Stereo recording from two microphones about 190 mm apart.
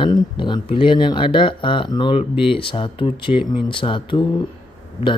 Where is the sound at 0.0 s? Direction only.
25° left (ahead or behind).